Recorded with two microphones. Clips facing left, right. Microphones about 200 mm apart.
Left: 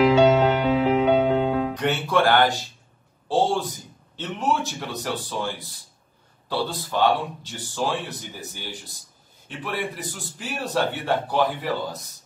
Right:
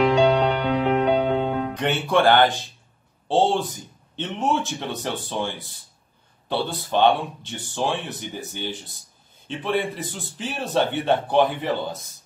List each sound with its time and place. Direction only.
0.0 s music: centre (ahead or behind)
1.8 s speech: 20° right (ahead or behind)
3.3 s speech: 20° right (ahead or behind)
6.5 s speech: 20° right (ahead or behind)
9.6 s speech: 20° right (ahead or behind)